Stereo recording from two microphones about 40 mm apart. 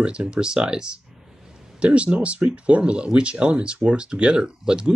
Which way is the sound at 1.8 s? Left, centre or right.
Right.